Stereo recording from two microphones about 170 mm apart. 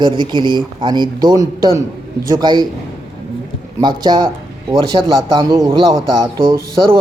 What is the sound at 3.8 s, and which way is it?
A man's voice, 25° right (ahead or behind).